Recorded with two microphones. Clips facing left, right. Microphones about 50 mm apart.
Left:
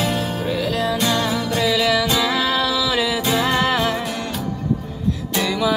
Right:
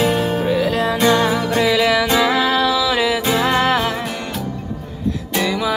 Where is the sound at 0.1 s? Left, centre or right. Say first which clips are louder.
Right 5 dB; right.